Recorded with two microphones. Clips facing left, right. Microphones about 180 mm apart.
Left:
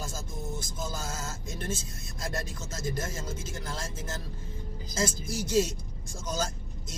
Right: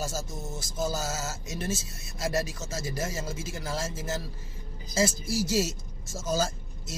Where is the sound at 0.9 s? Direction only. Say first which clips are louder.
Right 5 dB; 90° right.